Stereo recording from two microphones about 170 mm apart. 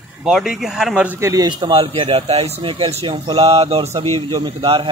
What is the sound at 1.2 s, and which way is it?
A man's voice, 20° right (ahead or behind).